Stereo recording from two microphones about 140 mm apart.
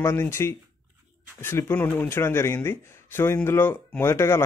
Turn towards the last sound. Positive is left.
turn(degrees=15)  # may be behind; listen again after turning